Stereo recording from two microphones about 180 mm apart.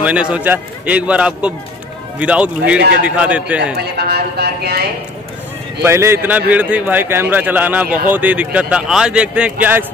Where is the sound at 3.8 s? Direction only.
65° right (ahead or behind).